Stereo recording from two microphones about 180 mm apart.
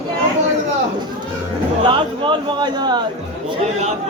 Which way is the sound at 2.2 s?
25° right (ahead or behind).